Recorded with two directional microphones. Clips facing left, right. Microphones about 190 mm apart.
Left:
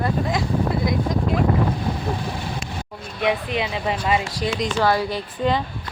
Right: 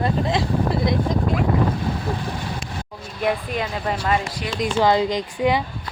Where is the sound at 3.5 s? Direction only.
15° left (ahead or behind).